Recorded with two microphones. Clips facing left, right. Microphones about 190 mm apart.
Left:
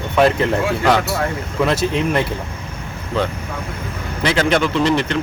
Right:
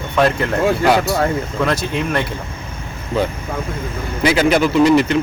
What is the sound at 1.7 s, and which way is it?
Speech, centre (ahead or behind).